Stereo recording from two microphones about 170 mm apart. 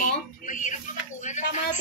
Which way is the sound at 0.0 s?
50° left (ahead or behind).